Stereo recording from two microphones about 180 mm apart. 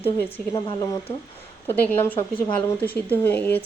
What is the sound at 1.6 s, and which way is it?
Speech, 10° left (ahead or behind).